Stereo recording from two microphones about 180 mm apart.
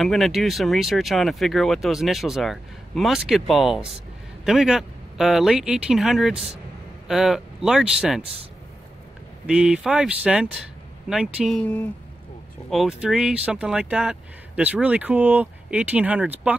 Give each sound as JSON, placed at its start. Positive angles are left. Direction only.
{"t": 0.0, "sound": "speech", "side_deg": 0}
{"t": 9.5, "sound": "speech", "side_deg": -5}
{"t": 11.6, "sound": "speech", "side_deg": 10}
{"t": 12.6, "sound": "speech", "side_deg": 0}